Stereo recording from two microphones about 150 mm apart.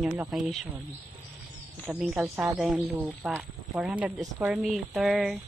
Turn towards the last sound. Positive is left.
turn(degrees=0)  # may be behind; listen again after turning